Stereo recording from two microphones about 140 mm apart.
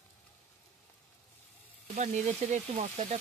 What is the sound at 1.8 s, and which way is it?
Speech, 60° right (ahead or behind).